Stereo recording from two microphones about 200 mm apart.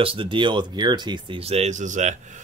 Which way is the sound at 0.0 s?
25° right (ahead or behind).